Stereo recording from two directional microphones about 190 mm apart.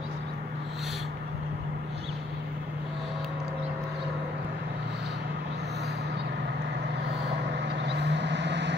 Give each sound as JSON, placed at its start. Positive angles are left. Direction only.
{"t": 7.6, "sound": "vehicle", "side_deg": -60}